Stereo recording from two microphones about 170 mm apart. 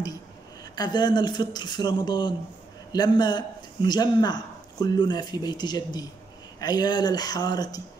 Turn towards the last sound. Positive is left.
turn(degrees=25)  # may be behind; listen again after turning